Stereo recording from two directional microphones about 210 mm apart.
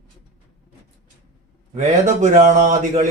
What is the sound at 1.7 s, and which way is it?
A man's voice, 35° right (ahead or behind).